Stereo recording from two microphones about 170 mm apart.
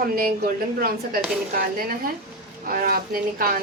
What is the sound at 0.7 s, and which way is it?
Speech, 60° right (ahead or behind).